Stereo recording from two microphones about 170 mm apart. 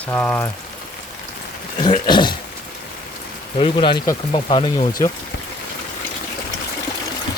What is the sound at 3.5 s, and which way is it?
Speech, 30° left (ahead or behind).